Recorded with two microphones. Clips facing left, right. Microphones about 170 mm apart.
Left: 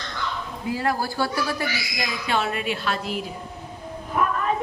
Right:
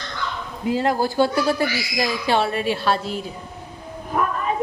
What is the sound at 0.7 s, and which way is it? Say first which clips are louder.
A woman's voice: right 5 dB; 20° right (ahead or behind).